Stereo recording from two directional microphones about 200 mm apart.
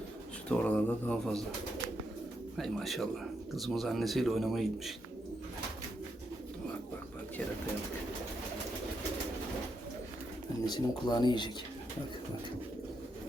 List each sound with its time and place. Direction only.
0.5 s speech: 5° left (ahead or behind)
2.6 s speech: centre (ahead or behind)
10.7 s speech: 20° left (ahead or behind)